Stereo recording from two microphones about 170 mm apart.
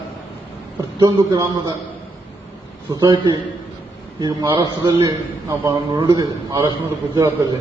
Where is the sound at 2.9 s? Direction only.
20° right (ahead or behind).